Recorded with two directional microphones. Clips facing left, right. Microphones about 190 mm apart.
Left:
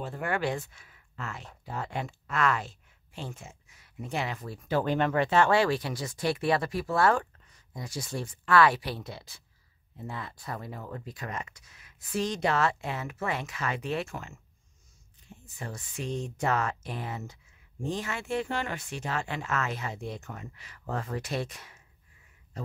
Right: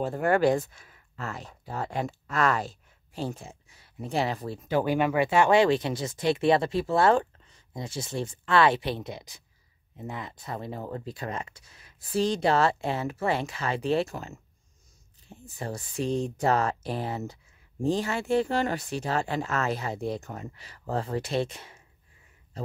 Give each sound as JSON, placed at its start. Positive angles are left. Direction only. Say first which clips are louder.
{"t": 0.0, "sound": "speech", "louder": "right 8 dB", "side_deg": -40}
{"t": 4.6, "sound": "speech", "louder": "right 2 dB", "side_deg": -15}